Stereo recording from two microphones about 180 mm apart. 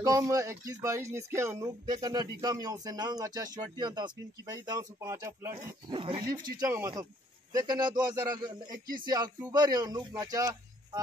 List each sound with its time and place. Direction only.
0.0 s speech: 20° right (ahead or behind)
5.9 s speech: 30° right (ahead or behind)